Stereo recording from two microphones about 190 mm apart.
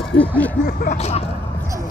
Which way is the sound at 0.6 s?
45° left (ahead or behind).